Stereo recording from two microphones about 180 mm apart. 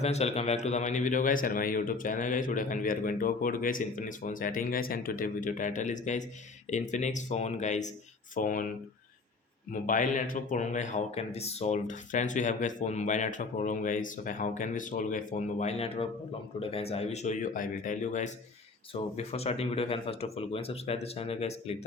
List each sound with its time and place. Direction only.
0.0 s a man's voice: 35° left (ahead or behind)
9.8 s a man's voice: 45° left (ahead or behind)